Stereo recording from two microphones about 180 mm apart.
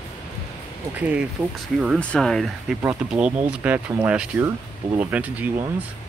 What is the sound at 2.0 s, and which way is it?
Speech, 5° left (ahead or behind).